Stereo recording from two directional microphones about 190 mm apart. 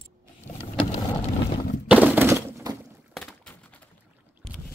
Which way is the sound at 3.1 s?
5° left (ahead or behind).